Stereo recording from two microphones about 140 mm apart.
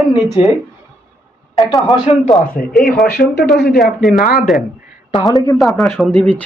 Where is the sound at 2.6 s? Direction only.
70° left (ahead or behind).